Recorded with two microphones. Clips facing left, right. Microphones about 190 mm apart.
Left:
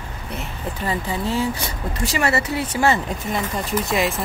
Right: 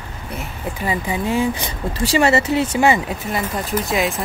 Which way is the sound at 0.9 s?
15° right (ahead or behind).